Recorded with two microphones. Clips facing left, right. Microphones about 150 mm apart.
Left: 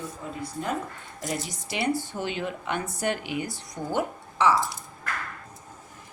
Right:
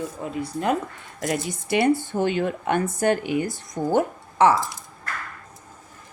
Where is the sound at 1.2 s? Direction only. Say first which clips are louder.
Right 6 dB; 65° right (ahead or behind); by 4.5 s 50° right (ahead or behind).